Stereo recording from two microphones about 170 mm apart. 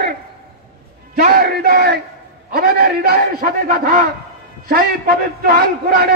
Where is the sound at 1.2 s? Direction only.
60° right (ahead or behind).